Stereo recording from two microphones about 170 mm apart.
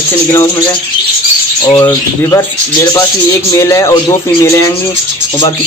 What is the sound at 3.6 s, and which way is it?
Speech, 15° left (ahead or behind).